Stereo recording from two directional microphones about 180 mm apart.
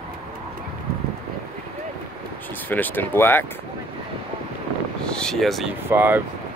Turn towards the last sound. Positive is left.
turn(degrees=-10)  # may be behind; listen again after turning